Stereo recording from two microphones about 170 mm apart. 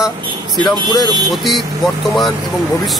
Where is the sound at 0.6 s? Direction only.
25° left (ahead or behind).